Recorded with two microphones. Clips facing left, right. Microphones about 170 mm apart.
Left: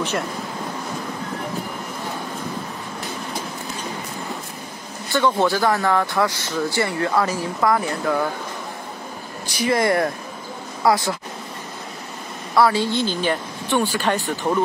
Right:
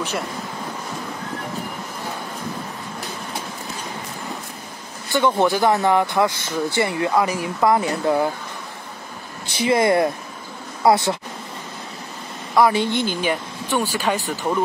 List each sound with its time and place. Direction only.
5.1 s speech: 15° right (ahead or behind)
9.5 s speech: 20° right (ahead or behind)
12.5 s speech: 20° right (ahead or behind)